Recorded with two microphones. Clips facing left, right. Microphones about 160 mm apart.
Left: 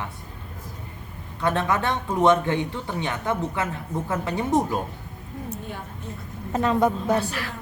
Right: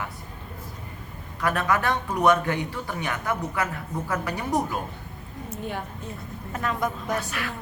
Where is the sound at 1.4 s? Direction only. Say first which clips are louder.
Left 1 dB; 25° left (ahead or behind).